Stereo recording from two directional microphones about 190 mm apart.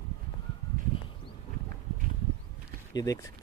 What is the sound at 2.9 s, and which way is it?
Speech, 20° left (ahead or behind).